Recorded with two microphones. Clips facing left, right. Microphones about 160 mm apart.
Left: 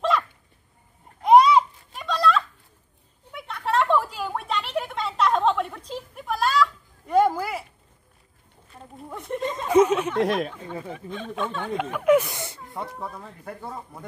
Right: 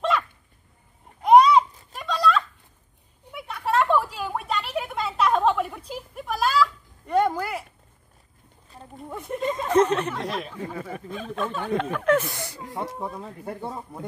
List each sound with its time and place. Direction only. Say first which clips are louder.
0.1 s dog: left 1 dB; centre (ahead or behind)
1.2 s a sound: even; centre (ahead or behind)
8.9 s a sound: left 1 dB; centre (ahead or behind)
9.7 s speech: left 3 dB; 10° left (ahead or behind)
10.7 s speech: even; 5° right (ahead or behind)
11.7 s speech: left 3 dB; 10° left (ahead or behind)
12.8 s speech: right 3 dB; 20° right (ahead or behind)